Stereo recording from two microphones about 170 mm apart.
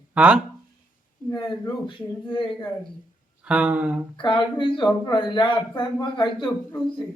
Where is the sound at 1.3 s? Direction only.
25° left (ahead or behind).